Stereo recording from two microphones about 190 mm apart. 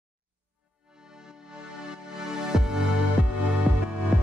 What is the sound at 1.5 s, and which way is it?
Music, 5° right (ahead or behind).